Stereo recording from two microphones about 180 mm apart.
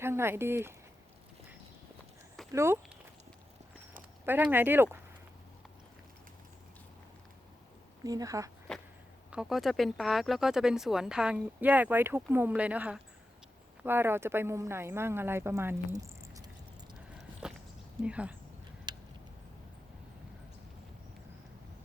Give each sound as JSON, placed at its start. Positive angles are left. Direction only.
{"t": 0.0, "sound": "speech", "side_deg": -15}
{"t": 2.5, "sound": "speech", "side_deg": -15}
{"t": 4.5, "sound": "speech", "side_deg": -10}
{"t": 8.0, "sound": "speech", "side_deg": -20}
{"t": 8.7, "sound": "a sound", "side_deg": 5}
{"t": 9.3, "sound": "speech", "side_deg": 0}
{"t": 18.0, "sound": "speech", "side_deg": -5}
{"t": 18.9, "sound": "a sound", "side_deg": -25}